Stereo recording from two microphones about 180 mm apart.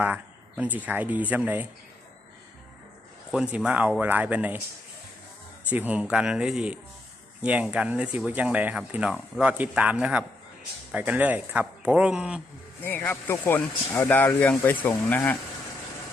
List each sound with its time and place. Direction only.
0.0 s speech: 10° right (ahead or behind)
3.3 s speech: 5° right (ahead or behind)
5.6 s speech: 10° right (ahead or behind)
12.8 s speech: 10° left (ahead or behind)